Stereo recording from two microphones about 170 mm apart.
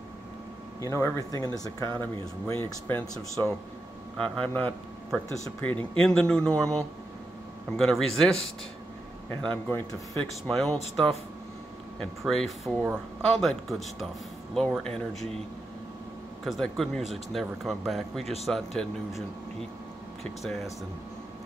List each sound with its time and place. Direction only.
0.7 s speech: 15° left (ahead or behind)
9.4 s speech: 10° left (ahead or behind)
12.3 s speech: centre (ahead or behind)
16.4 s speech: centre (ahead or behind)